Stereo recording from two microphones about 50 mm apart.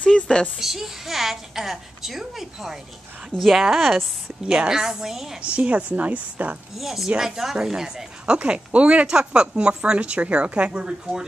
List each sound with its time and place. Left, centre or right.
0.0 s speech: centre
0.6 s a woman's voice: centre
4.5 s a woman's voice: centre
5.4 s a woman's voice: right
6.8 s a woman's voice: centre
8.4 s a woman's voice: right